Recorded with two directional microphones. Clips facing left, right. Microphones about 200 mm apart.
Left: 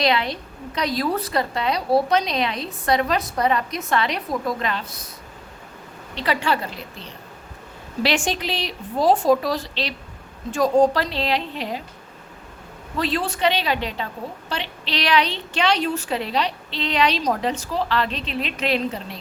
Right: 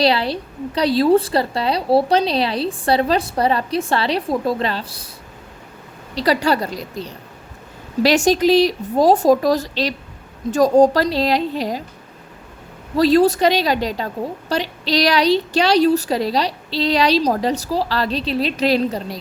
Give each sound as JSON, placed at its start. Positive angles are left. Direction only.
{"t": 0.0, "sound": "a woman's voice", "side_deg": -35}
{"t": 6.1, "sound": "a woman's voice", "side_deg": -40}
{"t": 13.0, "sound": "a woman's voice", "side_deg": -40}